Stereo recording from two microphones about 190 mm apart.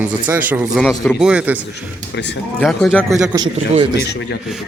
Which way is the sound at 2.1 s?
65° left (ahead or behind).